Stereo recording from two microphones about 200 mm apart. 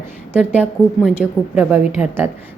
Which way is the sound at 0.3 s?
5° right (ahead or behind).